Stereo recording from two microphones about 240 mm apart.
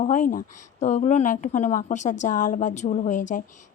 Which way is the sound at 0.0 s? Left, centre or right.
Left.